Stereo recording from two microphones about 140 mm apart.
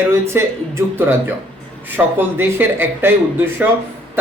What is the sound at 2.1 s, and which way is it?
A man's voice, 15° right (ahead or behind).